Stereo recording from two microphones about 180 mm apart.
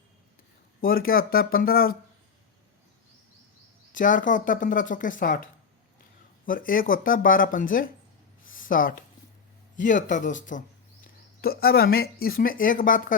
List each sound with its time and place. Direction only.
0.8 s speech: 55° left (ahead or behind)
3.9 s speech: 45° left (ahead or behind)
8.4 s a sound: 50° left (ahead or behind)
9.7 s speech: 45° left (ahead or behind)
11.0 s speech: 55° left (ahead or behind)